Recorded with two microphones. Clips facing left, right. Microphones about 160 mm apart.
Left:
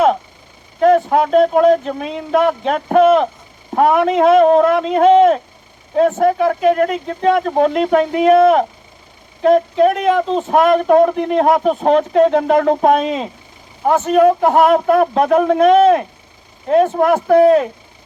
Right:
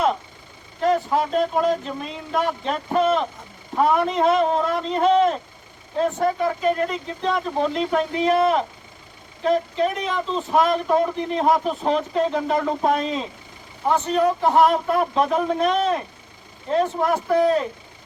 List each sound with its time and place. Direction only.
0.8 s speech: 60° left (ahead or behind)
6.0 s speech: 75° left (ahead or behind)